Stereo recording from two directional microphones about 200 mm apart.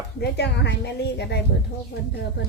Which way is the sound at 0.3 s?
55° left (ahead or behind).